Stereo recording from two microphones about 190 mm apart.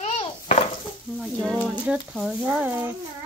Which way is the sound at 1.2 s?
Centre (ahead or behind).